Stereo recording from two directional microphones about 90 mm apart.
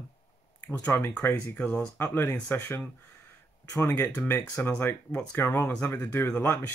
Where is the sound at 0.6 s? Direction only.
20° left (ahead or behind).